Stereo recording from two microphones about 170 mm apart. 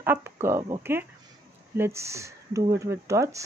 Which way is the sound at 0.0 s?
15° right (ahead or behind).